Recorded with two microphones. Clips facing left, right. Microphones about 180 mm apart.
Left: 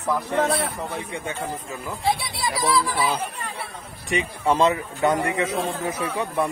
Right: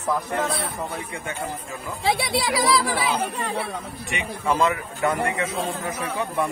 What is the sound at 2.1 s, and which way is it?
Speech, 85° right.